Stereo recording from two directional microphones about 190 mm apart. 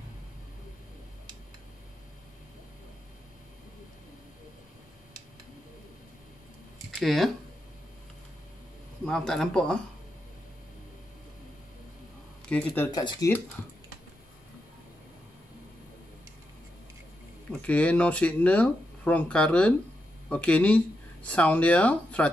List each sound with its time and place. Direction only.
7.0 s speech: centre (ahead or behind)
9.0 s a man's voice: 5° left (ahead or behind)
12.4 s speech: 5° left (ahead or behind)
13.0 s speech: 25° left (ahead or behind)
17.5 s speech: 5° left (ahead or behind)